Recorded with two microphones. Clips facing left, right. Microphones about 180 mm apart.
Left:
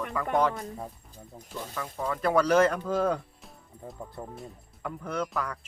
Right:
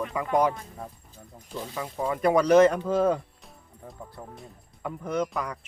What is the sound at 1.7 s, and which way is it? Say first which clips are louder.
Speech: right 3 dB; 15° right (ahead or behind).